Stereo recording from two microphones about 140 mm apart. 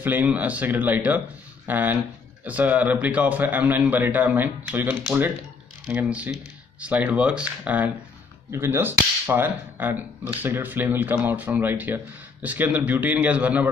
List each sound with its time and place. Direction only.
0.0 s speech: 15° right (ahead or behind)